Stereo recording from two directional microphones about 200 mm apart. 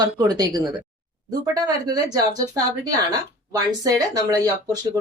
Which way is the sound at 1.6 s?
20° right (ahead or behind).